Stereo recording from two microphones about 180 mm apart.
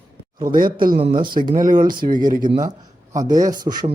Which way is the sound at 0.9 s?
30° right (ahead or behind).